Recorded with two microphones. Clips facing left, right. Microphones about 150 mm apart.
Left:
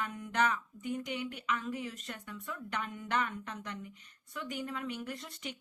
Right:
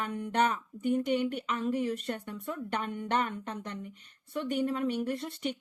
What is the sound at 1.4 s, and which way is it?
A woman's voice, 35° right (ahead or behind).